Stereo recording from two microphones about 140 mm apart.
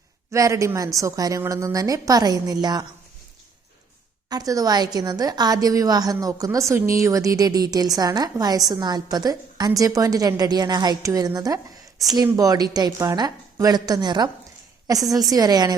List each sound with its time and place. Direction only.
0.3 s a woman's voice: 20° right (ahead or behind)
4.3 s a woman's voice: 25° right (ahead or behind)